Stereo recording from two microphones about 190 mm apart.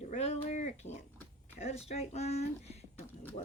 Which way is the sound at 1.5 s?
35° left (ahead or behind).